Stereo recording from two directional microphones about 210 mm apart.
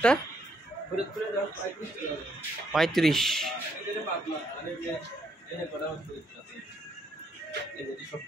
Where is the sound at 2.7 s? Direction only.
Centre (ahead or behind).